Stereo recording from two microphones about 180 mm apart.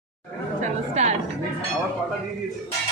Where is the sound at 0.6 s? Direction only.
40° right (ahead or behind).